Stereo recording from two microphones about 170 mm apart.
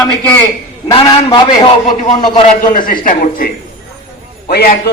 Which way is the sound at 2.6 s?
50° left (ahead or behind).